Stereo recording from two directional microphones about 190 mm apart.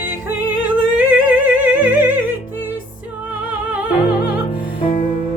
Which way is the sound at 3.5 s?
5° right (ahead or behind).